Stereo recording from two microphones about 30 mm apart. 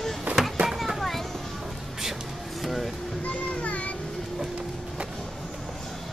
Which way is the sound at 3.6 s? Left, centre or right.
Left.